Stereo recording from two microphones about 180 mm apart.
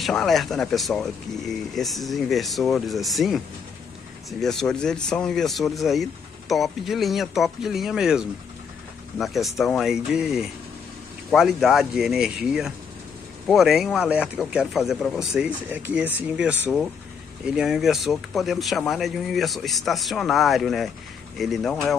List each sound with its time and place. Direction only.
0.0 s speech: centre (ahead or behind)